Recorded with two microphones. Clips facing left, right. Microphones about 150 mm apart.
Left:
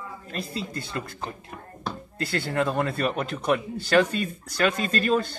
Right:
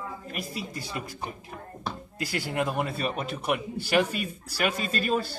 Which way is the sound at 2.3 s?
15° right (ahead or behind).